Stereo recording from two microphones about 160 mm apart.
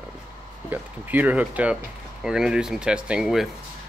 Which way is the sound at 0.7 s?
10° right (ahead or behind).